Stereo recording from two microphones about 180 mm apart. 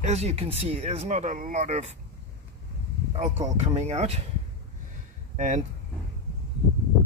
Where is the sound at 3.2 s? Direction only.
40° right (ahead or behind).